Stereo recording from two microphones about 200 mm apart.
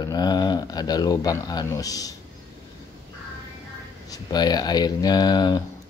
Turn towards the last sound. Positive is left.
turn(degrees=20)  # may be behind; listen again after turning